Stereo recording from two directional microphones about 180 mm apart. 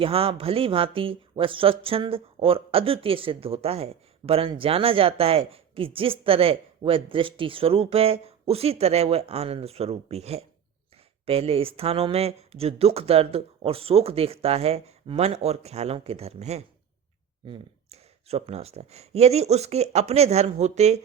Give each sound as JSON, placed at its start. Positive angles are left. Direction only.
{"t": 0.0, "sound": "speech", "side_deg": -30}